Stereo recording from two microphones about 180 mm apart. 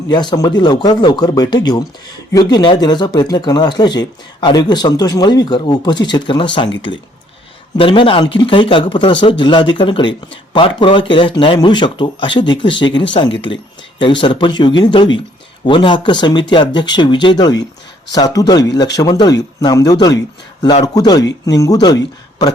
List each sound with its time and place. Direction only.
0.1 s speech: 25° left (ahead or behind)
14.0 s speech: 25° left (ahead or behind)